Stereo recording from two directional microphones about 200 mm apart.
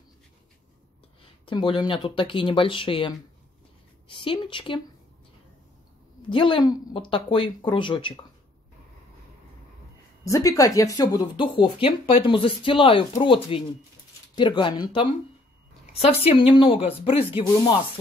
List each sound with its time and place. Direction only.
1.4 s speech: 25° left (ahead or behind)
6.3 s speech: 25° left (ahead or behind)
10.2 s speech: 15° left (ahead or behind)